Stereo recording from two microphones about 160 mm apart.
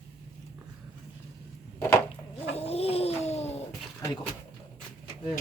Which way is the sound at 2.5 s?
40° left (ahead or behind).